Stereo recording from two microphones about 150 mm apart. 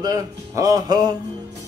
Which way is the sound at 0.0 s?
25° right (ahead or behind).